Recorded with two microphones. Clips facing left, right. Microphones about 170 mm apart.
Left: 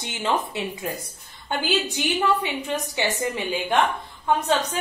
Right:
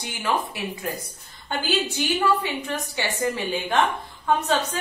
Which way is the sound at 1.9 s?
15° left (ahead or behind).